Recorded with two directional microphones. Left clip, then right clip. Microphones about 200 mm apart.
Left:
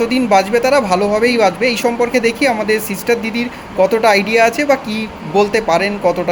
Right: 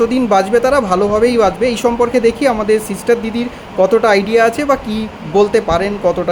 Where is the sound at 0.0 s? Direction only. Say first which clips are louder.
Even; 25° right (ahead or behind).